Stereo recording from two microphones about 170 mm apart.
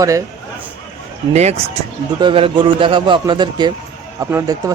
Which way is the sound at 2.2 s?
30° right (ahead or behind).